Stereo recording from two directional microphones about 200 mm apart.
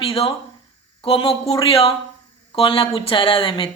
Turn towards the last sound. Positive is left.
turn(degrees=25)  # may be behind; listen again after turning